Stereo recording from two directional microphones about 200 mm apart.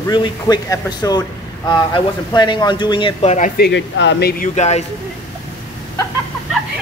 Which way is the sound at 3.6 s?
60° left (ahead or behind).